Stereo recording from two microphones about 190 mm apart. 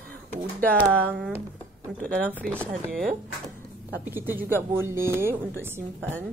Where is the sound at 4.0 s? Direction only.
10° right (ahead or behind).